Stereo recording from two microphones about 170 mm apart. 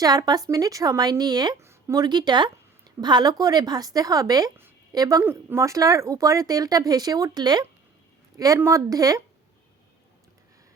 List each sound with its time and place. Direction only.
0.0 s speech: 20° right (ahead or behind)